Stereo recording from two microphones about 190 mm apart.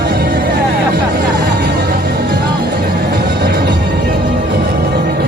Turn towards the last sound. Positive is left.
turn(degrees=-55)  # may be behind; listen again after turning